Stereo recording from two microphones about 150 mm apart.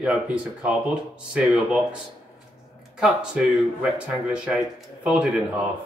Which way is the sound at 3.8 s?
5° right (ahead or behind).